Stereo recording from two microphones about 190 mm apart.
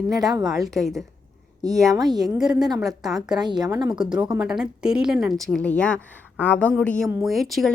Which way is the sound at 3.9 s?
5° right (ahead or behind).